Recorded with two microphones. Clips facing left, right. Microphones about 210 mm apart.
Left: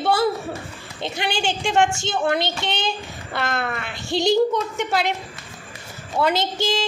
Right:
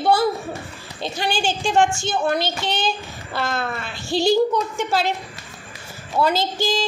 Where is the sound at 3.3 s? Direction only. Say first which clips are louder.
Even; 60° left (ahead or behind).